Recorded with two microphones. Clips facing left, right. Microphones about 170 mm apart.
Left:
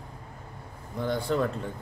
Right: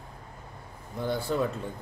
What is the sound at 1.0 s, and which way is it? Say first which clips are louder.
Speech: left 1 dB; 5° right (ahead or behind).